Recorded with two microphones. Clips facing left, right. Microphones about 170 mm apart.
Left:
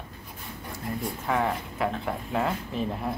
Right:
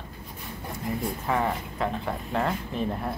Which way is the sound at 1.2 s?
Centre (ahead or behind).